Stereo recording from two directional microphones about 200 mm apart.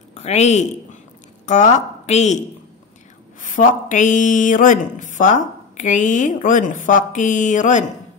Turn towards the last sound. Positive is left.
turn(degrees=40)  # may be behind; listen again after turning